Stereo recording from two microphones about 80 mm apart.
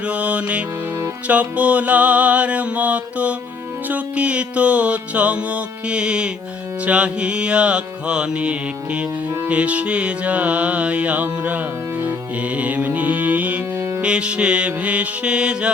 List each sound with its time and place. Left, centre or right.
0.0 s music: centre